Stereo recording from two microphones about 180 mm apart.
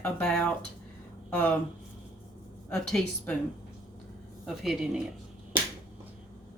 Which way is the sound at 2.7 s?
5° left (ahead or behind).